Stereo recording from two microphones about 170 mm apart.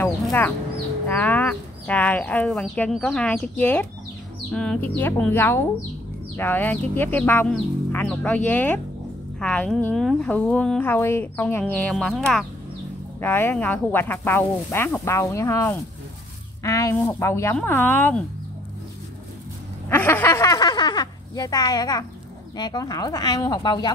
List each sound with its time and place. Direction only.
0.0 s a sound: 15° left (ahead or behind)
1.0 s speech: 10° left (ahead or behind)
19.9 s speech: 10° left (ahead or behind)